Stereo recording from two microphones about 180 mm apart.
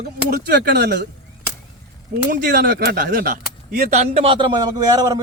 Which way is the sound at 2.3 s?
55° right (ahead or behind).